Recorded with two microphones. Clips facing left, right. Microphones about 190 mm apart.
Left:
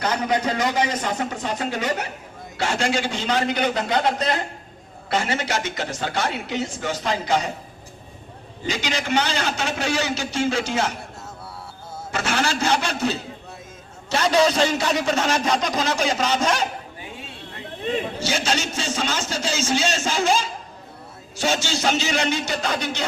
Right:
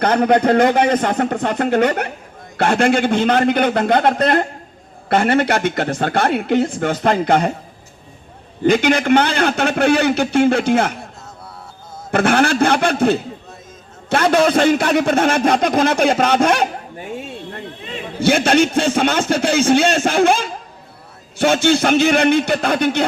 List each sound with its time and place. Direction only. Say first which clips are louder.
0.0 s a man's voice: right 8 dB; 60° right (ahead or behind)
8.6 s a man's voice: right 12 dB; 55° right (ahead or behind)
12.1 s a man's voice: right 9 dB; 55° right (ahead or behind)
18.2 s a man's voice: right 11 dB; 55° right (ahead or behind)